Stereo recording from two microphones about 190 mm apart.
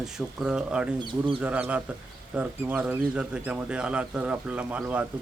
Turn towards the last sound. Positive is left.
turn(degrees=-5)  # may be behind; listen again after turning